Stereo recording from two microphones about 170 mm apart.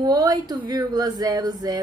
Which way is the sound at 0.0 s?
25° right (ahead or behind).